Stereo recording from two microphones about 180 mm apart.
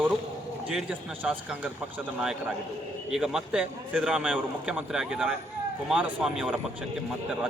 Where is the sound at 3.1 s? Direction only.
5° right (ahead or behind).